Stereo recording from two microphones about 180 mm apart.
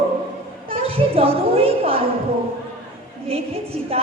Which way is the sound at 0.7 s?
30° right (ahead or behind).